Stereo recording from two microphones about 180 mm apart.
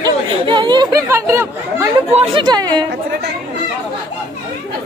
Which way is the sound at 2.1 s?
30° right (ahead or behind).